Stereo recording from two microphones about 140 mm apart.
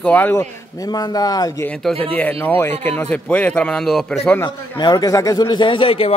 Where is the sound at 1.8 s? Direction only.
10° left (ahead or behind).